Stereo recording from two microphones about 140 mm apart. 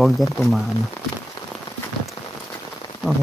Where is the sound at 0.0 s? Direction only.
Centre (ahead or behind).